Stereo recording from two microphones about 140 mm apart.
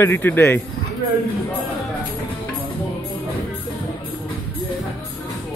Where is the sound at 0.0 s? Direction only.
15° left (ahead or behind).